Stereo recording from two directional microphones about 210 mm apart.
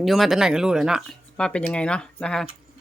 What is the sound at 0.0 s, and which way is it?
Speech, centre (ahead or behind).